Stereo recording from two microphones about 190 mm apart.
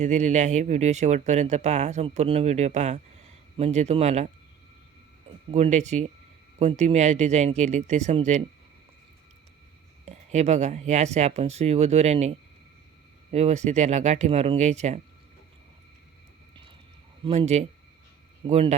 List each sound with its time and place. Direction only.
0.0 s speech: 40° right (ahead or behind)
5.5 s speech: 35° right (ahead or behind)
10.1 s speech: 35° right (ahead or behind)
13.3 s speech: 35° right (ahead or behind)
17.2 s speech: 35° right (ahead or behind)